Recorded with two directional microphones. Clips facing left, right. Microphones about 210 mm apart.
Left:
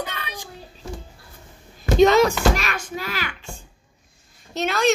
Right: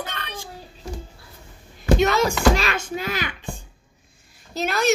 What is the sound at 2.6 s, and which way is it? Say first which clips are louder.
Speech: right 3 dB; 30° right (ahead or behind).